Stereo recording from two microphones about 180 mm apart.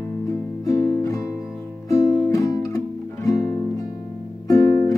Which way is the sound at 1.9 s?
15° left (ahead or behind).